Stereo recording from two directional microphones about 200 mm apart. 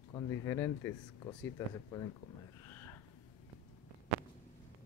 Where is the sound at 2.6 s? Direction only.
15° left (ahead or behind).